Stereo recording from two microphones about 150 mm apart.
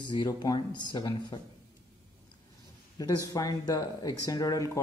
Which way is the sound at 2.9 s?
25° left (ahead or behind).